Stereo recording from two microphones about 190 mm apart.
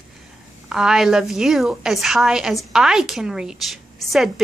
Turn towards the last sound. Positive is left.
turn(degrees=0)  # may be behind; listen again after turning